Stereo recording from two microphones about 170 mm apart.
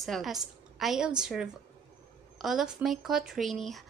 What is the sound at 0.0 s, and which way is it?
Speech, centre (ahead or behind).